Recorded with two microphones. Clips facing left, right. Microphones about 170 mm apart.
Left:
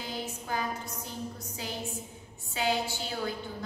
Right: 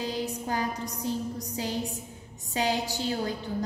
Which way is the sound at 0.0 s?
35° right (ahead or behind).